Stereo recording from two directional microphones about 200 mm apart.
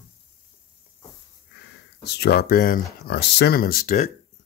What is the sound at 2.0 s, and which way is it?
Speech, 55° left (ahead or behind).